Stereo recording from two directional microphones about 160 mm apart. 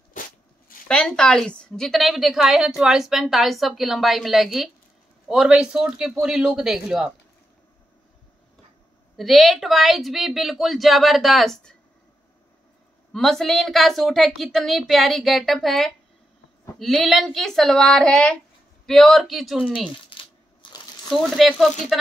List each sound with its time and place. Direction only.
0.1 s a sound: 60° left (ahead or behind)
0.8 s a woman's voice: 5° left (ahead or behind)
9.1 s a woman's voice: centre (ahead or behind)
13.1 s a woman's voice: centre (ahead or behind)
20.2 s crushing: 30° left (ahead or behind)
21.1 s a woman's voice: centre (ahead or behind)